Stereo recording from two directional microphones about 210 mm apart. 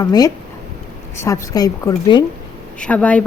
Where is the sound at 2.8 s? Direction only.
5° left (ahead or behind).